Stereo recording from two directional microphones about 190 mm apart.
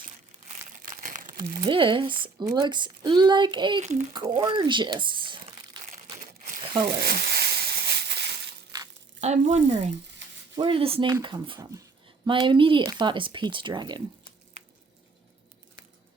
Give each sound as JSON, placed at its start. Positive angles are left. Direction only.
{"t": 0.4, "sound": "crumpling", "side_deg": -45}
{"t": 1.6, "sound": "speech", "side_deg": -25}
{"t": 6.1, "sound": "crumpling", "side_deg": -40}
{"t": 7.0, "sound": "a sound", "side_deg": -55}
{"t": 9.2, "sound": "speech", "side_deg": -40}